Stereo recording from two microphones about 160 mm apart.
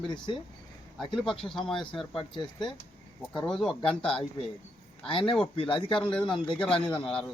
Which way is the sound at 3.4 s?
Centre (ahead or behind).